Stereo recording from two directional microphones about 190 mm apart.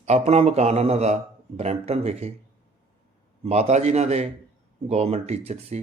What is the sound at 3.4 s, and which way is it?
A man's voice, 35° right (ahead or behind).